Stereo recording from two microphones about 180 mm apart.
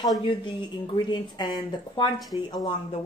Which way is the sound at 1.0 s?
25° left (ahead or behind).